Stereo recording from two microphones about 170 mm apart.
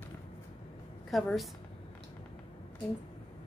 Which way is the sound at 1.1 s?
Centre (ahead or behind).